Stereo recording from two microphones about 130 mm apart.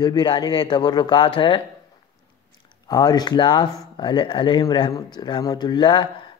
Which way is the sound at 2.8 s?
30° left (ahead or behind).